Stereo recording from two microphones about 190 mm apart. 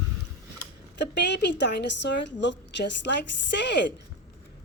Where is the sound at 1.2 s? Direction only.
65° left (ahead or behind).